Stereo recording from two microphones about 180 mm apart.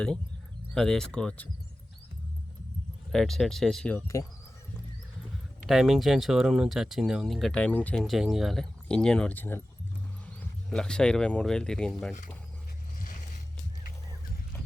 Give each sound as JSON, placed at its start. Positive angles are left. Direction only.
{"t": 0.7, "sound": "speech", "side_deg": 0}
{"t": 3.1, "sound": "speech", "side_deg": 0}
{"t": 4.0, "sound": "speech", "side_deg": 15}
{"t": 5.6, "sound": "speech", "side_deg": 0}
{"t": 13.0, "sound": "a sound", "side_deg": 50}